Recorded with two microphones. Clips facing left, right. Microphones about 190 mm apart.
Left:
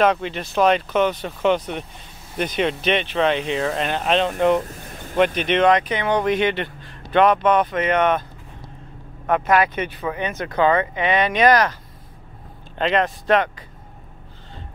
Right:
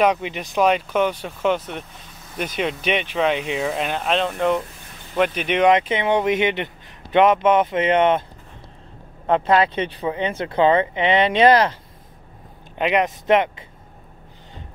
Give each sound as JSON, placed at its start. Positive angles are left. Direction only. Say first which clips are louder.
{"t": 0.0, "sound": "speech", "louder": "even", "side_deg": -10}
{"t": 5.7, "sound": "speech", "louder": "right 1 dB", "side_deg": -25}
{"t": 9.2, "sound": "speech", "louder": "right 1 dB", "side_deg": -25}
{"t": 12.7, "sound": "speech", "louder": "even", "side_deg": -15}